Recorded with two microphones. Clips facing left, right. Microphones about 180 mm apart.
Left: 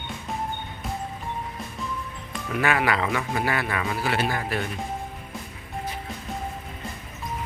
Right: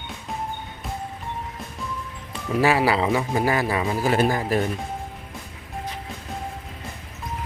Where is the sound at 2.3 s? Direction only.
30° right (ahead or behind).